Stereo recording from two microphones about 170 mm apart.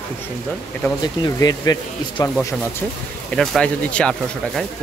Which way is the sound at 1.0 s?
25° left (ahead or behind).